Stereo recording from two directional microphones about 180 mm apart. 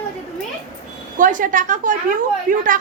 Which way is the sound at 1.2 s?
45° right (ahead or behind).